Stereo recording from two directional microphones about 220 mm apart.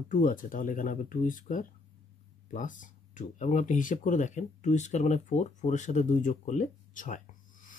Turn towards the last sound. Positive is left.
turn(degrees=35)  # may be behind; listen again after turning